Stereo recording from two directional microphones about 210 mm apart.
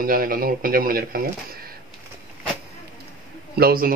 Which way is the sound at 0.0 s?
40° right (ahead or behind).